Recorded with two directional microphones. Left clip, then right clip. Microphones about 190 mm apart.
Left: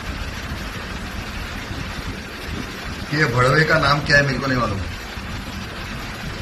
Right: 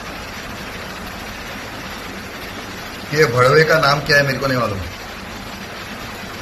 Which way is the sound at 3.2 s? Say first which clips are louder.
Right 5 dB; 15° left (ahead or behind).